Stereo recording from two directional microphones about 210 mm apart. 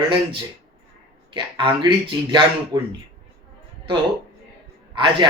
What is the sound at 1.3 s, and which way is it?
Speech, 25° right (ahead or behind).